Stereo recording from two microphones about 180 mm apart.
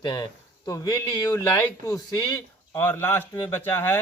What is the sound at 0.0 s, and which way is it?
Speech, 25° left (ahead or behind).